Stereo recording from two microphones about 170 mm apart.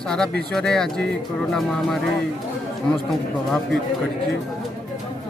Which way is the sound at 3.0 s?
Centre (ahead or behind).